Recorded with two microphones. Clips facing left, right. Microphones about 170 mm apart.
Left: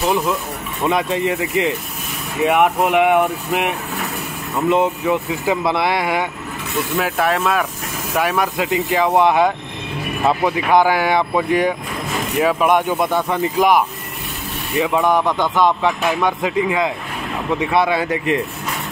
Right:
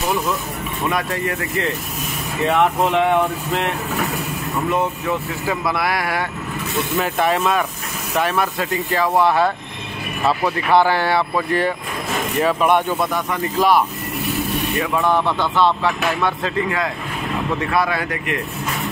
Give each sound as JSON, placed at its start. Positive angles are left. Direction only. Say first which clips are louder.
{"t": 0.8, "sound": "speech", "louder": "left 5 dB", "side_deg": 20}
{"t": 7.0, "sound": "speech", "louder": "even", "side_deg": 0}
{"t": 8.2, "sound": "speech", "louder": "left 1 dB", "side_deg": 10}